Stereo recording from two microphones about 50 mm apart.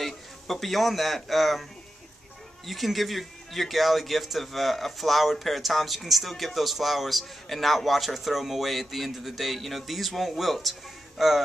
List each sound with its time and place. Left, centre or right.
0.0 s a man's voice: centre